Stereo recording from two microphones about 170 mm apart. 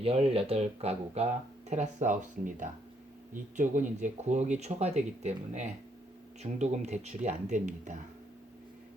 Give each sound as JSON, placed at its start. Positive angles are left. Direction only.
{"t": 0.0, "sound": "speech", "side_deg": -35}